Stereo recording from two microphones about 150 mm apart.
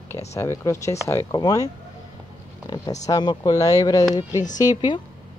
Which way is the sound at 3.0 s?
25° left (ahead or behind).